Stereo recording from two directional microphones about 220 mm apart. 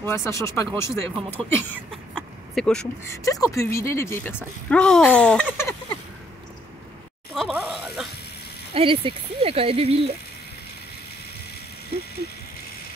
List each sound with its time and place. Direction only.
0.0 s speech: 10° left (ahead or behind)
3.3 s speech: 15° left (ahead or behind)
7.3 s a sound: centre (ahead or behind)
8.7 s speech: 25° right (ahead or behind)